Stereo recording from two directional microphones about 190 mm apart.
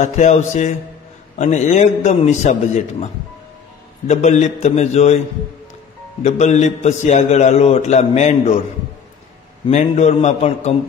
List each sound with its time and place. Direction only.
0.0 s a man's voice: 40° left (ahead or behind)
4.1 s a man's voice: 35° left (ahead or behind)
6.2 s a man's voice: 35° left (ahead or behind)
9.7 s a man's voice: 35° left (ahead or behind)